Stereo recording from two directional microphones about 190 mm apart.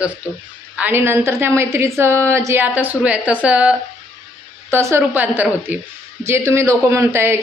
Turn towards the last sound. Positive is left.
turn(degrees=-15)  # may be behind; listen again after turning